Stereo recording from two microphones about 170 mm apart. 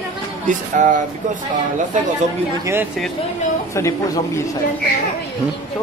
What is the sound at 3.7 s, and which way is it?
Speech, 15° left (ahead or behind).